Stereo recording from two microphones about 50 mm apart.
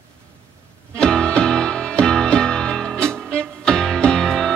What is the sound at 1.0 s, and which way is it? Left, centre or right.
Music, centre.